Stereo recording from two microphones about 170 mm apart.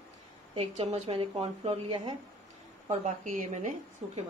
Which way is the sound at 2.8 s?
45° right (ahead or behind).